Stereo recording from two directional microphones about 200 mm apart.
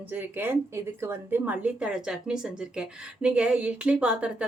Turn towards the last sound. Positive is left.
turn(degrees=-5)  # may be behind; listen again after turning